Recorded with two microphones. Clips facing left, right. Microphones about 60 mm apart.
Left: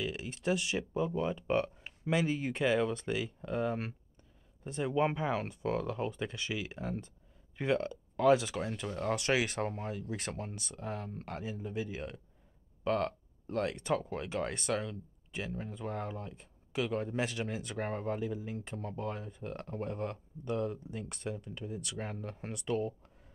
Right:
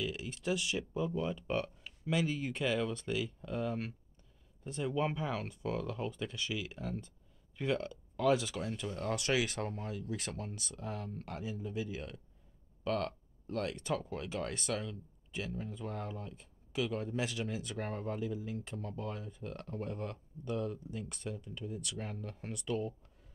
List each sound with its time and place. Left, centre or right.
0.0 s speech: left
8.5 s speech: left
10.0 s speech: left
10.3 s speech: left; by 14.1 s centre
14.7 s speech: left
17.7 s speech: left
21.6 s speech: centre
21.9 s speech: left